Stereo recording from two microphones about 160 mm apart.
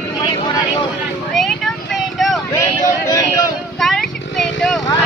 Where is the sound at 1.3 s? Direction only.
Centre (ahead or behind).